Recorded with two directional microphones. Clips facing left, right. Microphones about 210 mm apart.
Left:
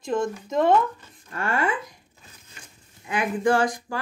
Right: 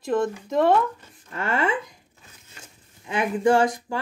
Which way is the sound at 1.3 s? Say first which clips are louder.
Right 1 dB; 20° right (ahead or behind).